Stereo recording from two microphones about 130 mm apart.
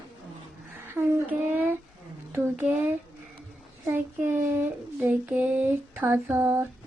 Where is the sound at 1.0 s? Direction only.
15° right (ahead or behind).